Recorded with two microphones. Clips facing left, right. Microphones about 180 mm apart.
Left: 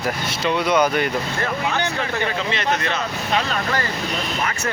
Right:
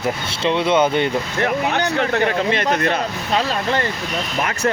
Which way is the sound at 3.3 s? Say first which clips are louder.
Right 3 dB; 30° right (ahead or behind).